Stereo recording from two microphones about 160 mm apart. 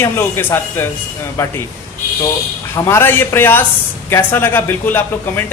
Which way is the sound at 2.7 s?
15° left (ahead or behind).